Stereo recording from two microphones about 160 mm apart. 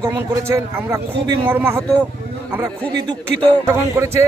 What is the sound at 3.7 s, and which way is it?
Speech, 15° right (ahead or behind).